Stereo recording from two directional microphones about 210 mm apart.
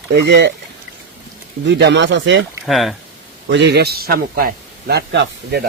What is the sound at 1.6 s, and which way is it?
Speech, 55° right (ahead or behind).